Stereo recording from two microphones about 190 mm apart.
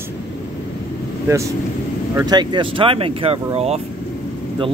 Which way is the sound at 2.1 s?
20° right (ahead or behind).